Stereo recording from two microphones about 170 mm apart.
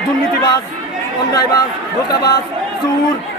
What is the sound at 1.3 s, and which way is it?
Speech, 20° left (ahead or behind).